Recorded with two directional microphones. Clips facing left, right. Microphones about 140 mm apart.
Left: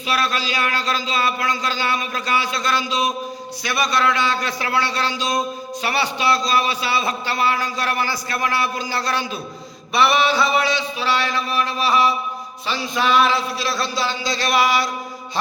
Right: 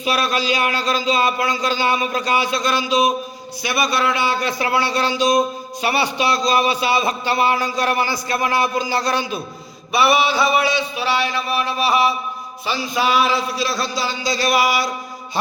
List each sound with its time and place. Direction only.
0.0 s a man's voice: 15° right (ahead or behind)